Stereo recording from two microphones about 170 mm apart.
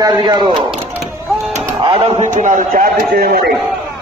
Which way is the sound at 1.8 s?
30° right (ahead or behind).